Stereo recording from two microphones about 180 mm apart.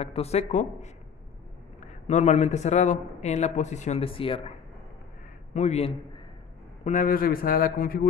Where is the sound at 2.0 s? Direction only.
40° left (ahead or behind).